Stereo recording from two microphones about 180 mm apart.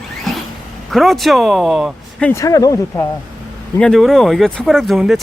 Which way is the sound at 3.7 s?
5° left (ahead or behind).